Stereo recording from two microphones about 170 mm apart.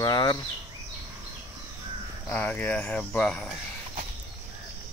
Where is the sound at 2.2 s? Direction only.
10° left (ahead or behind).